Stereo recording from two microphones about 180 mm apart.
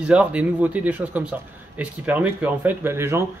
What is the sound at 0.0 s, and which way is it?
Speech, 5° right (ahead or behind).